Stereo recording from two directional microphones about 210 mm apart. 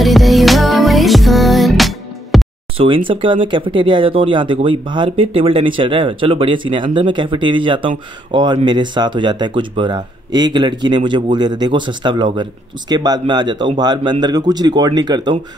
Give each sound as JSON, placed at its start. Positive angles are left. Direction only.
{"t": 0.0, "sound": "music", "side_deg": 0}
{"t": 3.1, "sound": "speech", "side_deg": -25}